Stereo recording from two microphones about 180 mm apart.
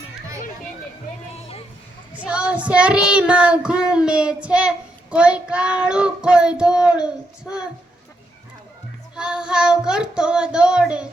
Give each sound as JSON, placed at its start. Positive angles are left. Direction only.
{"t": 1.3, "sound": "a sound", "side_deg": 35}
{"t": 2.5, "sound": "child singing", "side_deg": -5}
{"t": 9.1, "sound": "child singing", "side_deg": -5}